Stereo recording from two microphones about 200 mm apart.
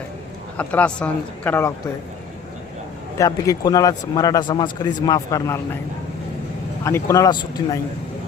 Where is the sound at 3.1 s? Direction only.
15° left (ahead or behind).